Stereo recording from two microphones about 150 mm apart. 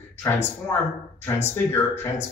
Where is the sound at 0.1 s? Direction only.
15° left (ahead or behind).